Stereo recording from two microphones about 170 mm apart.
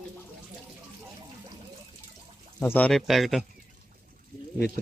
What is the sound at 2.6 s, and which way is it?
Speech, 10° left (ahead or behind).